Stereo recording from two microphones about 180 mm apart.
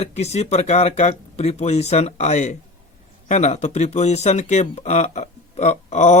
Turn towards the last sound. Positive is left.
turn(degrees=40)  # may be behind; listen again after turning